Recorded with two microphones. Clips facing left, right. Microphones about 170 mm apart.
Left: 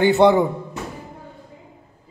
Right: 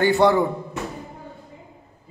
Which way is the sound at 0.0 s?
20° left (ahead or behind).